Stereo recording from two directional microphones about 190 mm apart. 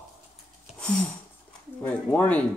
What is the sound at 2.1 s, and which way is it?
Speech, 5° left (ahead or behind).